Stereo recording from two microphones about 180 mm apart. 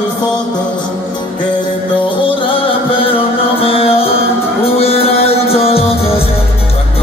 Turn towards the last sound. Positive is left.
turn(degrees=35)  # may be behind; listen again after turning